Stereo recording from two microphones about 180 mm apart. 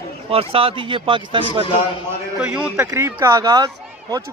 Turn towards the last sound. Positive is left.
turn(degrees=-20)  # may be behind; listen again after turning